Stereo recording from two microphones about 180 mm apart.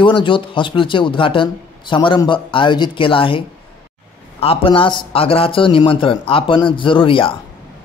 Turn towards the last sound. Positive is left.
turn(degrees=30)  # may be behind; listen again after turning